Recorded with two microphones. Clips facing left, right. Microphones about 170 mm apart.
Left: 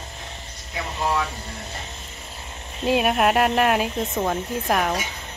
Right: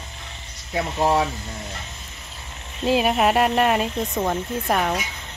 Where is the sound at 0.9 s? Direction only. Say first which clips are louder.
Right 4 dB; 40° right (ahead or behind).